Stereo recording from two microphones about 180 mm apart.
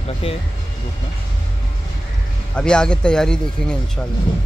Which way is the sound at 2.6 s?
5° left (ahead or behind).